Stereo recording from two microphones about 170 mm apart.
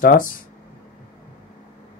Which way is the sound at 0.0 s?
55° left (ahead or behind).